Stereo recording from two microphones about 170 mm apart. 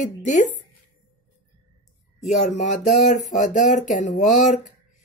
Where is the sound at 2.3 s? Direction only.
40° left (ahead or behind).